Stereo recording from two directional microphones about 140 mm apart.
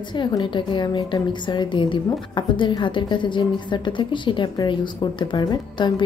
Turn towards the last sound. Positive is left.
turn(degrees=30)  # may be behind; listen again after turning